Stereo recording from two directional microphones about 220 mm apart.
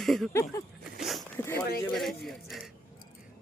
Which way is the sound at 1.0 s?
Centre (ahead or behind).